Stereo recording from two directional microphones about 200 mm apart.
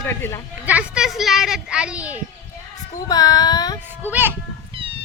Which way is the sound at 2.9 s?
20° left (ahead or behind).